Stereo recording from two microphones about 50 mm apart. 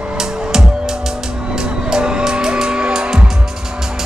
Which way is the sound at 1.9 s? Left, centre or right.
Centre.